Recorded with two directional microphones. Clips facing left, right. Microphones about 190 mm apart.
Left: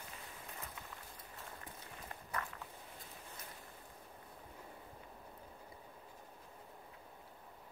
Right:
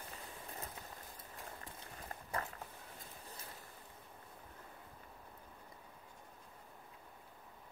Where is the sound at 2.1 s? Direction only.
30° right (ahead or behind).